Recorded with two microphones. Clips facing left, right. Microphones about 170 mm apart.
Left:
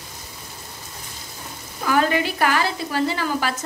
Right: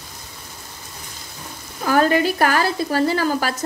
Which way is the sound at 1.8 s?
40° right (ahead or behind).